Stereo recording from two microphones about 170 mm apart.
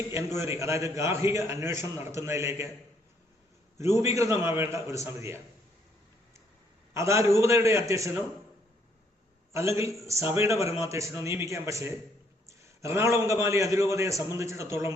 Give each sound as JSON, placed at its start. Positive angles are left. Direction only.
{"t": 0.1, "sound": "a man's voice", "side_deg": -15}
{"t": 3.8, "sound": "a man's voice", "side_deg": -15}
{"t": 6.9, "sound": "a man's voice", "side_deg": -15}
{"t": 9.5, "sound": "a man's voice", "side_deg": -15}